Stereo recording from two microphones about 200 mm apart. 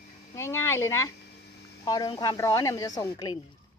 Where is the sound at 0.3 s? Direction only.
15° left (ahead or behind).